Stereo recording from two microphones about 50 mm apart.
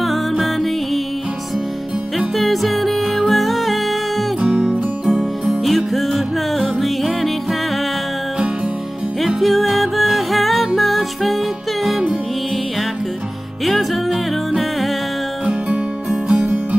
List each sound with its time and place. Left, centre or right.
0.0 s music: centre
2.1 s music: centre
4.4 s music: right
5.4 s music: centre
9.4 s music: centre
13.7 s music: centre
16.3 s music: right